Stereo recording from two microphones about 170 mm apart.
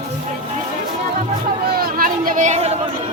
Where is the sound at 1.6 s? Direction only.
60° right (ahead or behind); by 2.7 s 40° right (ahead or behind).